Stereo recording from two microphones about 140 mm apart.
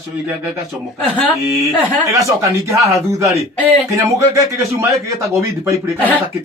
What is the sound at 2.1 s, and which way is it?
Speech, 20° right (ahead or behind).